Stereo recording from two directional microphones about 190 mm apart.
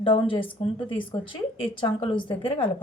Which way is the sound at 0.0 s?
30° left (ahead or behind).